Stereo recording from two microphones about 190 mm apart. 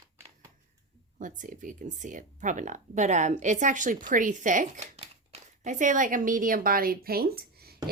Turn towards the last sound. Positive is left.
turn(degrees=-55)  # may be behind; listen again after turning